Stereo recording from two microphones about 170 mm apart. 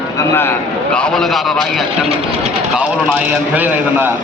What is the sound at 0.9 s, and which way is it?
Speech, 5° left (ahead or behind).